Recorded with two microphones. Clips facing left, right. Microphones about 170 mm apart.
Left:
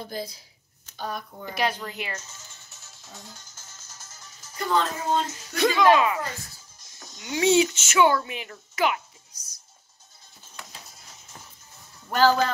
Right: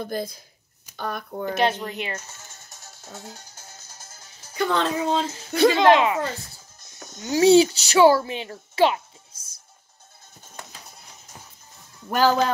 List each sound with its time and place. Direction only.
0.0 s speech: 50° right (ahead or behind)
1.6 s speech: 25° right (ahead or behind)
2.1 s music: 55° right (ahead or behind)
3.2 s music: 65° right (ahead or behind)
4.6 s a woman's voice: 75° right (ahead or behind)
5.3 s speech: 30° right (ahead or behind)
7.2 s speech: 35° right (ahead or behind)